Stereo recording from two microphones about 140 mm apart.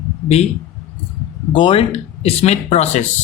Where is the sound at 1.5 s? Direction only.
35° left (ahead or behind).